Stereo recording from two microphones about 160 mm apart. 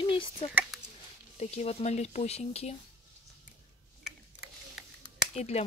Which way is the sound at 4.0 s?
5° right (ahead or behind).